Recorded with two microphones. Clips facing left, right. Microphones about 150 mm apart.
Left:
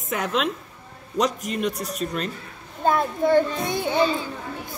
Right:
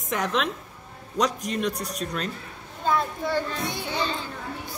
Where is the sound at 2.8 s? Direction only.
50° left (ahead or behind).